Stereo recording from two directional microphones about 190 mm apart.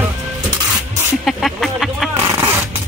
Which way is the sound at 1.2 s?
Centre (ahead or behind).